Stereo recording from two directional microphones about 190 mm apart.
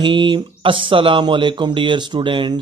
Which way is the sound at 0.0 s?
25° right (ahead or behind).